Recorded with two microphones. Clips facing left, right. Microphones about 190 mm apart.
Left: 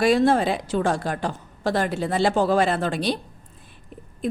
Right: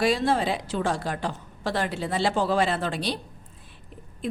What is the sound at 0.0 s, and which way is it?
A woman's voice, 50° left (ahead or behind).